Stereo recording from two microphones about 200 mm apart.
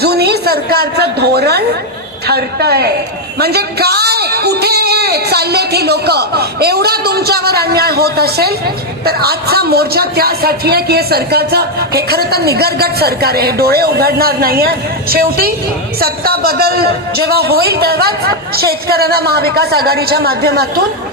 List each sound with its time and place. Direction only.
0.0 s a woman's voice: 55° right (ahead or behind)